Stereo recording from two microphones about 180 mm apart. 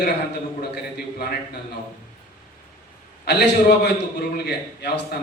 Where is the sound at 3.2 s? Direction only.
65° left (ahead or behind).